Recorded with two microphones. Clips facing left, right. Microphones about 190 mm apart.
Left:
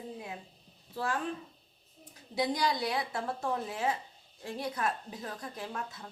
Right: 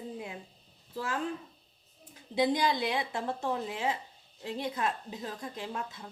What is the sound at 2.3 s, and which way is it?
A woman's voice, 25° right (ahead or behind).